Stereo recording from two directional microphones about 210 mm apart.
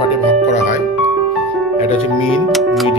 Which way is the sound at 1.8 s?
30° left (ahead or behind).